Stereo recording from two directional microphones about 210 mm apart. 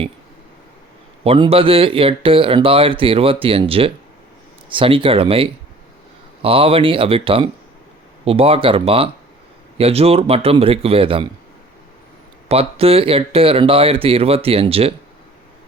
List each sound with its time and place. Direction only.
1.2 s speech: 30° right (ahead or behind)
12.5 s speech: 30° right (ahead or behind)